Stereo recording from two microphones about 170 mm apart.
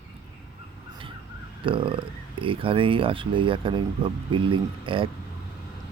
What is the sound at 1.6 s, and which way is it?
Speech, 30° right (ahead or behind).